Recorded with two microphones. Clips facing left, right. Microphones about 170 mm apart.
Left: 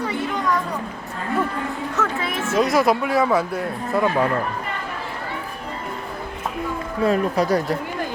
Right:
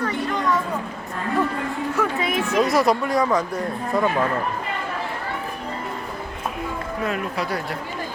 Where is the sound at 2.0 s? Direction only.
20° right (ahead or behind).